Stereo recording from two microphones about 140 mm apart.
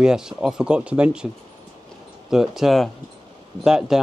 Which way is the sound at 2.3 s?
5° right (ahead or behind).